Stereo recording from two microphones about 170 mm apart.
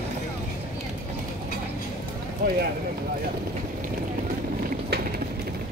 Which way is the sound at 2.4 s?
65° right (ahead or behind).